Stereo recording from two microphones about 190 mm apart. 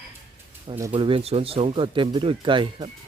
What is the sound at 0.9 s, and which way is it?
Speech, 30° right (ahead or behind).